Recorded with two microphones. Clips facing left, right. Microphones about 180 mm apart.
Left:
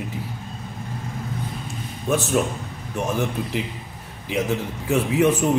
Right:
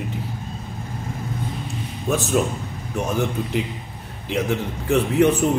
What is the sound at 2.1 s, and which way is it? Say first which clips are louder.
A man's voice: even; centre (ahead or behind).